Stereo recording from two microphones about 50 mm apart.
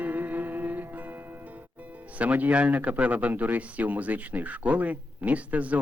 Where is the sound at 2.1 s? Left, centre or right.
Right.